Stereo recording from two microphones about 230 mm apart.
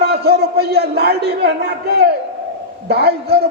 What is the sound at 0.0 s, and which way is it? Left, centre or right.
A man's voice, right.